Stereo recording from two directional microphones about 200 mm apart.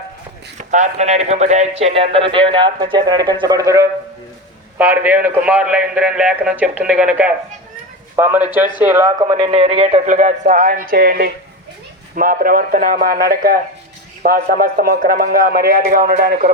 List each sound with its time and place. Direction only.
0.7 s a man's voice: 35° right (ahead or behind)